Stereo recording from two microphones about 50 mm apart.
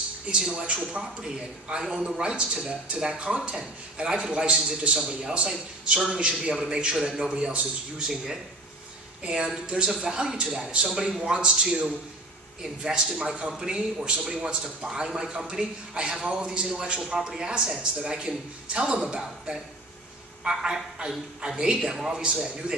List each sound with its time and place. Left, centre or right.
0.4 s speech: centre
9.2 s speech: centre
12.8 s speech: centre
20.4 s speech: centre